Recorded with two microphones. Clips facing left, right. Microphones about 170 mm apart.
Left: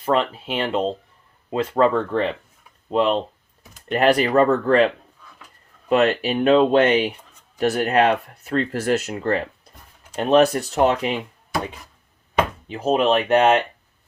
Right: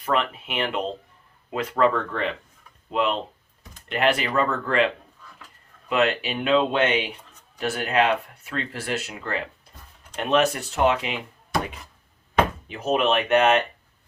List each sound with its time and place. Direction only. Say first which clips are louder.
0.0 s speech: left 4 dB; 30° left (ahead or behind)
5.9 s speech: left 5 dB; 40° left (ahead or behind)
12.6 s speech: left 4 dB; 30° left (ahead or behind)